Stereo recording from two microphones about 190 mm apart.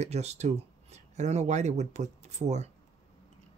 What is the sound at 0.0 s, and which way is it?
Speech, 35° right (ahead or behind).